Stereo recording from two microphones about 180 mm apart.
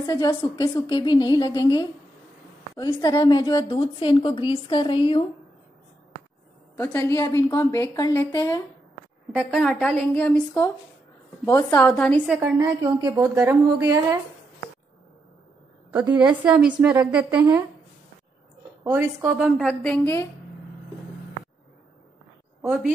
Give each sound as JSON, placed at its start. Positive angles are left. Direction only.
{"t": 0.0, "sound": "a woman's voice", "side_deg": 20}
{"t": 6.8, "sound": "a woman's voice", "side_deg": 15}
{"t": 9.3, "sound": "a woman's voice", "side_deg": 0}
{"t": 12.3, "sound": "a woman's voice", "side_deg": -5}
{"t": 12.5, "sound": "a woman's voice", "side_deg": -20}
{"t": 15.9, "sound": "a woman's voice", "side_deg": -10}
{"t": 18.9, "sound": "a woman's voice", "side_deg": -10}
{"t": 19.7, "sound": "a woman's voice", "side_deg": 10}
{"t": 22.6, "sound": "a woman's voice", "side_deg": -5}